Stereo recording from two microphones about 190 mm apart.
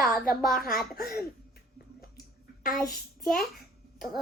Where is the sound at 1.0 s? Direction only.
55° left (ahead or behind).